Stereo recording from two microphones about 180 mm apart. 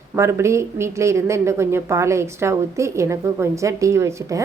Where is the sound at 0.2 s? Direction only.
15° right (ahead or behind).